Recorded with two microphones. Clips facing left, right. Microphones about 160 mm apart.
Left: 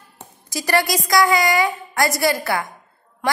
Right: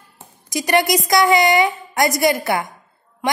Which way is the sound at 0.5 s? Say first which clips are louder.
Right 3 dB; 20° right (ahead or behind).